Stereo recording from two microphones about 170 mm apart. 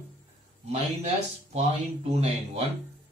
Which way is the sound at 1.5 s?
35° right (ahead or behind).